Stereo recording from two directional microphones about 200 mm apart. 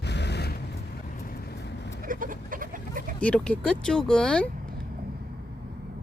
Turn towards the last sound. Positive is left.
turn(degrees=-50)  # may be behind; listen again after turning